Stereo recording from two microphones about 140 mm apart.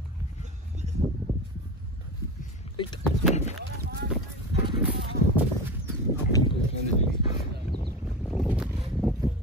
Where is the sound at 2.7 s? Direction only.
35° left (ahead or behind).